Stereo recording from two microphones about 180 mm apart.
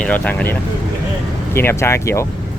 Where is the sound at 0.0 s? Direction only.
5° left (ahead or behind).